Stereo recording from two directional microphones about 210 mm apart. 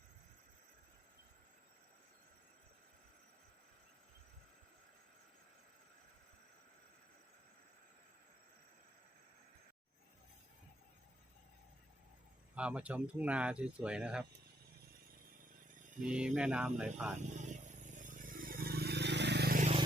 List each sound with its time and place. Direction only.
12.5 s speech: 5° right (ahead or behind)
16.0 s speech: 5° right (ahead or behind)
17.2 s vehicle: 35° right (ahead or behind)